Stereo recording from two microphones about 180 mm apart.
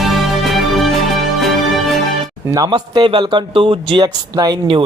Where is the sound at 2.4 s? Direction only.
20° right (ahead or behind).